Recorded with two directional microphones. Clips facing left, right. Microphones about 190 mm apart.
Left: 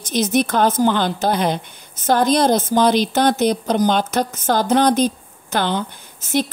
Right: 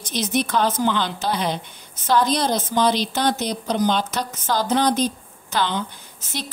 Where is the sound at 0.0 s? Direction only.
45° left (ahead or behind).